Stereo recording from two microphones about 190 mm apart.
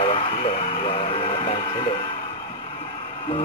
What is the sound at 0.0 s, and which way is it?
Music, 30° left (ahead or behind).